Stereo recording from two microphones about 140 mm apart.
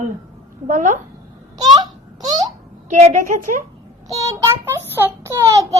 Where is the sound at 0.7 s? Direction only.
65° right (ahead or behind).